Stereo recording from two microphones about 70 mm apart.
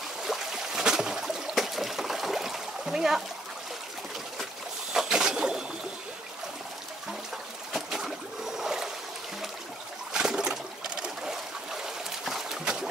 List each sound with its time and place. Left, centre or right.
0.2 s a sound: centre
4.9 s pigeon: centre
7.7 s boat: centre
10.1 s boat: centre